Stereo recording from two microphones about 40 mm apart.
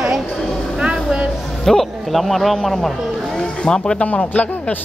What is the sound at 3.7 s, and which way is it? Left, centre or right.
Speech, left.